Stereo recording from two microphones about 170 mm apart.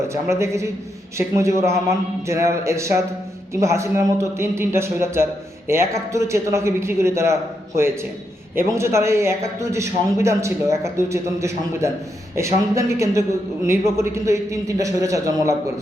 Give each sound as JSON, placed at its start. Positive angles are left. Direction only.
{"t": 0.1, "sound": "a man's voice", "side_deg": -15}
{"t": 8.5, "sound": "a man's voice", "side_deg": -15}